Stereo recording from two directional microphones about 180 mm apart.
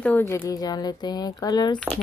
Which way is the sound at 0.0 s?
15° left (ahead or behind).